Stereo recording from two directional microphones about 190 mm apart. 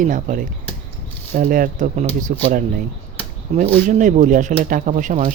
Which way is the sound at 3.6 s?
40° right (ahead or behind).